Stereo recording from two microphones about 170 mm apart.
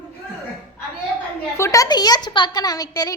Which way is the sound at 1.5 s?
15° left (ahead or behind).